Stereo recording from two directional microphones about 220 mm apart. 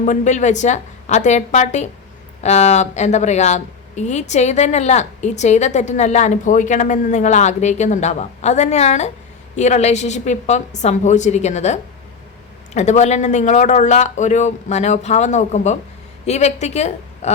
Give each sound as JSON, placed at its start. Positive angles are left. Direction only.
{"t": 0.0, "sound": "a woman's voice", "side_deg": 35}